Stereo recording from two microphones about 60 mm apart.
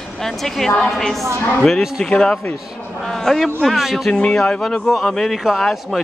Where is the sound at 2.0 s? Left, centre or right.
Centre.